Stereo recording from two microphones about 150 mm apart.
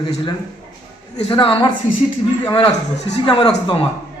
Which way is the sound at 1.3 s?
35° left (ahead or behind).